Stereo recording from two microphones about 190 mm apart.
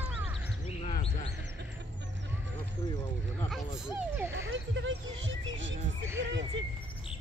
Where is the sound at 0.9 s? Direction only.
35° left (ahead or behind).